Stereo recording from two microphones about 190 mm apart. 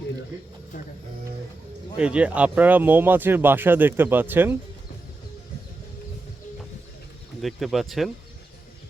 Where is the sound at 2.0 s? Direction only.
5° right (ahead or behind).